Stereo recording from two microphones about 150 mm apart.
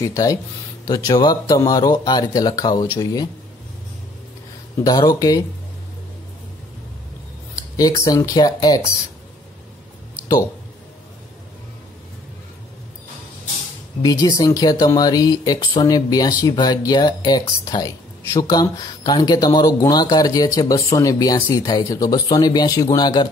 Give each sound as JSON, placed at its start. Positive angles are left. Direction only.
{"t": 0.0, "sound": "speech", "side_deg": 20}
{"t": 4.8, "sound": "speech", "side_deg": 25}
{"t": 7.5, "sound": "speech", "side_deg": 25}
{"t": 14.0, "sound": "speech", "side_deg": 25}